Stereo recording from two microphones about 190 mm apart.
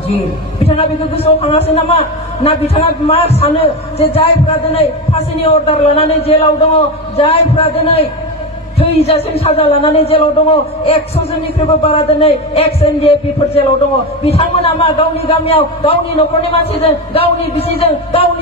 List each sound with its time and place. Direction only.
0.7 s a man's voice: 30° left (ahead or behind)
14.3 s a man's voice: 30° left (ahead or behind)